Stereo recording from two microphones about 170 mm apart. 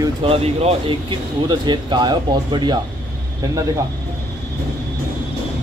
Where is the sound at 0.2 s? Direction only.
35° right (ahead or behind).